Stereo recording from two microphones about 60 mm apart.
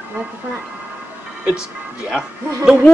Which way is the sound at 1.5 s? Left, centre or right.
Centre.